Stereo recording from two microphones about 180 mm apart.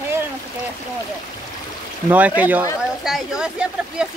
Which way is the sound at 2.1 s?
10° right (ahead or behind).